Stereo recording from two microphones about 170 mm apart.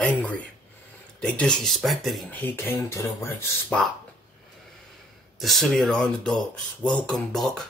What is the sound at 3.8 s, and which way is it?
Speech, 5° left (ahead or behind).